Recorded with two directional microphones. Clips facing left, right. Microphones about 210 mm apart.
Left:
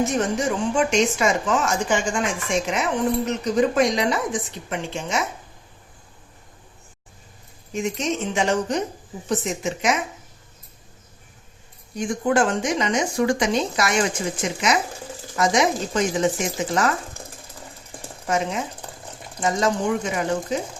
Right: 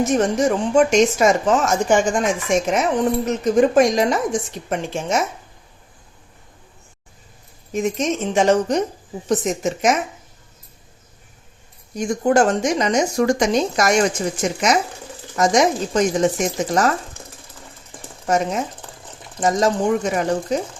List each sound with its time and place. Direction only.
0.0 s speech: 40° right (ahead or behind)
7.7 s speech: 40° right (ahead or behind)
11.9 s speech: 40° right (ahead or behind)
18.3 s speech: 40° right (ahead or behind)